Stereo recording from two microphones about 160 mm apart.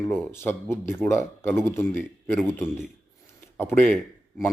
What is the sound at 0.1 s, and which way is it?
Speech, 15° left (ahead or behind).